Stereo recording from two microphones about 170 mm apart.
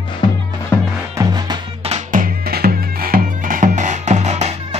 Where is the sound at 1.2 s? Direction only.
25° right (ahead or behind).